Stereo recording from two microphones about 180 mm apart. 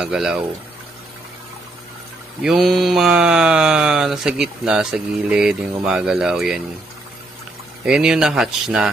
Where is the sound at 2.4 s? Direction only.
Centre (ahead or behind).